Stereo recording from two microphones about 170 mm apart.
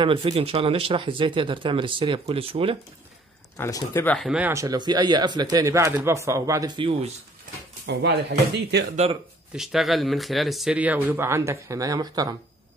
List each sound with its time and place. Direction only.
0.0 s speech: 30° right (ahead or behind)
3.5 s speech: 15° left (ahead or behind)
4.3 s speech: 10° right (ahead or behind); by 7.1 s 30° right (ahead or behind)
7.8 s speech: 90° right
8.9 s speech: 35° right (ahead or behind)
9.6 s speech: centre (ahead or behind); by 12.4 s 20° right (ahead or behind)